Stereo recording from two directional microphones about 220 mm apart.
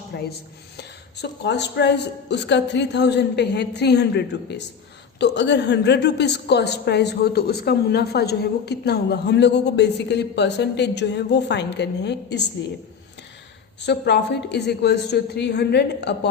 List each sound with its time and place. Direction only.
0.1 s a woman's voice: 50° left (ahead or behind)
13.8 s a woman's voice: 50° left (ahead or behind)